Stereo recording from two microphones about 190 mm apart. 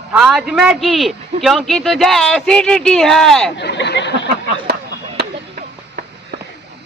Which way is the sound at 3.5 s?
65° left (ahead or behind).